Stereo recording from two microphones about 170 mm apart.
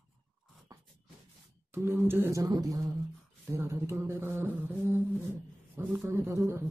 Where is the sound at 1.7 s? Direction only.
15° right (ahead or behind).